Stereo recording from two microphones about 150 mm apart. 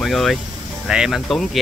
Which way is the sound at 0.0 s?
Centre (ahead or behind).